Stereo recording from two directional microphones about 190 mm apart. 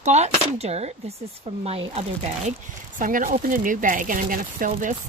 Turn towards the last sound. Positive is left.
turn(degrees=-45)  # may be behind; listen again after turning